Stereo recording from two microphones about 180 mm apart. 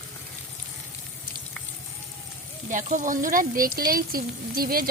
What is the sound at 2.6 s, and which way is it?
A woman's voice, 45° right (ahead or behind).